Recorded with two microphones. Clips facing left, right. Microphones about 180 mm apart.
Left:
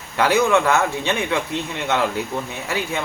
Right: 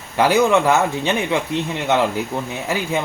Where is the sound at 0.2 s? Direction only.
15° right (ahead or behind).